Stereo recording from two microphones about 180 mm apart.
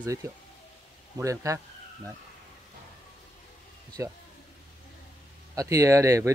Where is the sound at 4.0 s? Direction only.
15° right (ahead or behind).